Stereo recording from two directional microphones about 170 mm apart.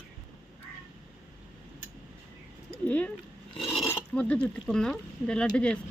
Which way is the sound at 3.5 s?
30° left (ahead or behind).